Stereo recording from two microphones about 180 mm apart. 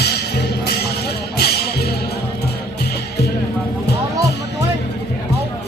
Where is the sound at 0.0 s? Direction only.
65° left (ahead or behind).